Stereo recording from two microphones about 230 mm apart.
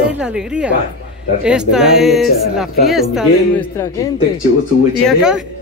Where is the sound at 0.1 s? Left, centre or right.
Centre.